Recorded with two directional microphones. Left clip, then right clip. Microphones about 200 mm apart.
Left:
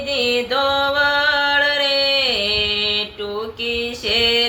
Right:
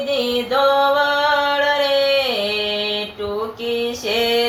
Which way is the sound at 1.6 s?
20° left (ahead or behind).